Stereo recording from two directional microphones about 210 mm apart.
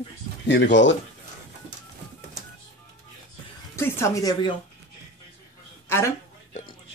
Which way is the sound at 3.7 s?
10° left (ahead or behind).